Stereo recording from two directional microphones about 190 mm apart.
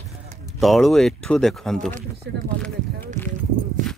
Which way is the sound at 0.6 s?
Centre (ahead or behind).